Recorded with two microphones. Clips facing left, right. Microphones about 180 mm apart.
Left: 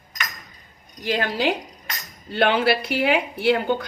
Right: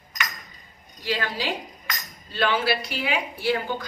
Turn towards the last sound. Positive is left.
turn(degrees=65)  # may be behind; listen again after turning